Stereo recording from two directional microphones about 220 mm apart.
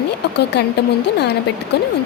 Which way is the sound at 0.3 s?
50° left (ahead or behind).